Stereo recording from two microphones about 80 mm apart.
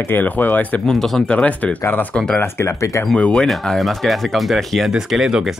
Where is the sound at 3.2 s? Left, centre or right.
Centre.